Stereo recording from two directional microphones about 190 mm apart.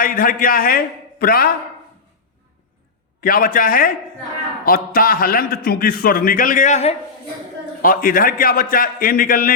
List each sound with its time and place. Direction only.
0.0 s a man's voice: 50° left (ahead or behind)
3.2 s a man's voice: 50° left (ahead or behind)
7.8 s a man's voice: 50° left (ahead or behind)